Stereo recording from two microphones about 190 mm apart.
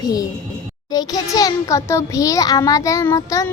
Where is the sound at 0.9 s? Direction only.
20° left (ahead or behind).